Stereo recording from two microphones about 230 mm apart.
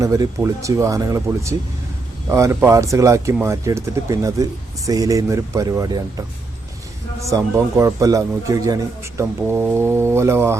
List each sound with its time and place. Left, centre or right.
0.0 s a man's voice: centre
7.3 s a man's voice: centre